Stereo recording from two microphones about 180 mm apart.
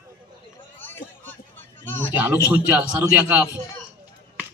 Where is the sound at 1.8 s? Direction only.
10° left (ahead or behind).